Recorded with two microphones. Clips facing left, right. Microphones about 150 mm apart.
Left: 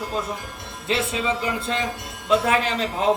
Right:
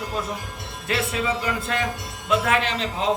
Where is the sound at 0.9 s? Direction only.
20° left (ahead or behind).